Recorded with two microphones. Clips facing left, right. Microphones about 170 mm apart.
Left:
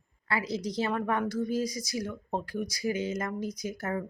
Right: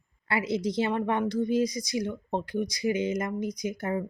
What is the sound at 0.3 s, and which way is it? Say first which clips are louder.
A woman's voice: right 4 dB; 25° right (ahead or behind).